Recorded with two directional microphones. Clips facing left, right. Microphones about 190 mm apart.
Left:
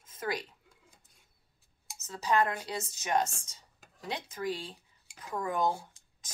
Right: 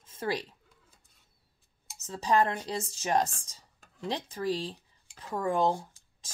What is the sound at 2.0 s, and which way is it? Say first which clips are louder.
Speech: right 2 dB; 30° right (ahead or behind).